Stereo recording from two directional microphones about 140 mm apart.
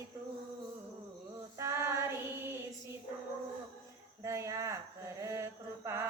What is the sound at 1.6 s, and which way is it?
Child singing, 20° right (ahead or behind).